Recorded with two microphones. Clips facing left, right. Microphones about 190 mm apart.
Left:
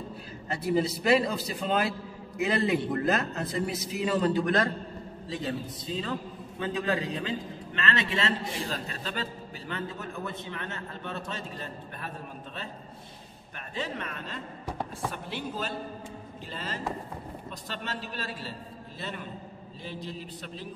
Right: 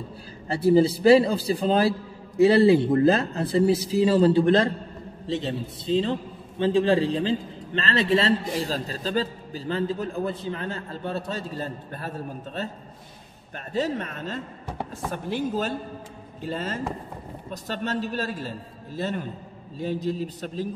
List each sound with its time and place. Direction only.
0.5 s a man's voice: 30° right (ahead or behind)
13.7 s a man's voice: 40° right (ahead or behind)